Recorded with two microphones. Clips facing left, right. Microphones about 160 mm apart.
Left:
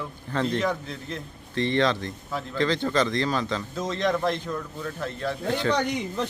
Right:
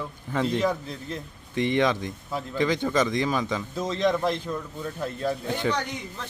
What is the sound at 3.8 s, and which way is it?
A man's voice, centre (ahead or behind).